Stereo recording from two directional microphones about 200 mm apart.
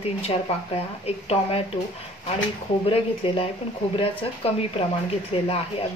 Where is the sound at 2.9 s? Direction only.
25° left (ahead or behind).